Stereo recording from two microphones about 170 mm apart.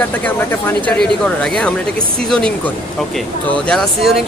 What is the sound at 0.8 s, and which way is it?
A man's voice, 5° left (ahead or behind).